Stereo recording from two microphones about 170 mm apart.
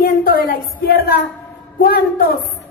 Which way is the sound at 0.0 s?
55° left (ahead or behind).